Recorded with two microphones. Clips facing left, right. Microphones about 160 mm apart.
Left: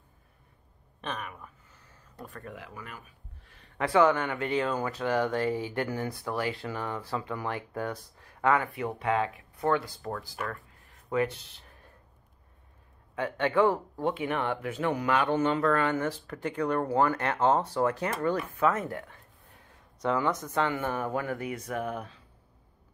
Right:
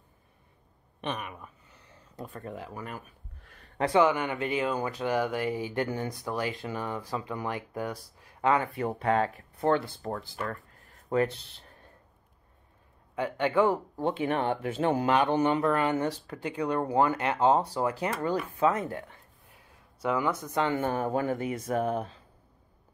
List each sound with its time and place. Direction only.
1.0 s a sound: 20° right (ahead or behind)
2.5 s speech: 35° right (ahead or behind)
3.4 s a sound: 50° right (ahead or behind)
3.9 s speech: 15° right (ahead or behind)
8.7 s speech: 40° right (ahead or behind)
9.8 s speech: 30° right (ahead or behind)
13.1 s speech: 15° right (ahead or behind)
14.1 s speech: 35° right (ahead or behind)
20.0 s speech: 10° right (ahead or behind)
20.6 s speech: 30° right (ahead or behind)